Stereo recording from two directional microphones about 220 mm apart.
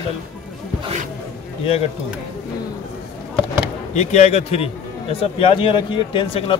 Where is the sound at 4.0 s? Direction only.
30° left (ahead or behind).